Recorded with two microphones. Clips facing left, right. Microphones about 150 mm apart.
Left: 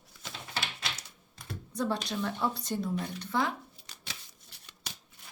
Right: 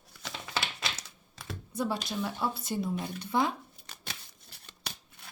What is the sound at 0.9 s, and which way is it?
Typing, 90° right.